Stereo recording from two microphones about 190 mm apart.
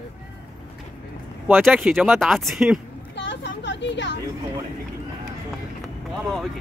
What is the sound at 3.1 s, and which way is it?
Vehicle, 70° left (ahead or behind).